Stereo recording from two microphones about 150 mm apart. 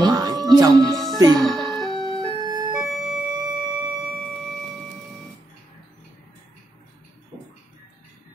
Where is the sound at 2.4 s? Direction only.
30° right (ahead or behind).